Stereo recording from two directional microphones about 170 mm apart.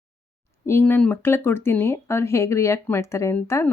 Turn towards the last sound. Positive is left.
turn(degrees=15)  # may be behind; listen again after turning